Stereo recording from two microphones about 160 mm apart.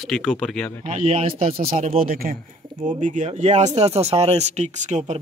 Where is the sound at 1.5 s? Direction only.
55° right (ahead or behind).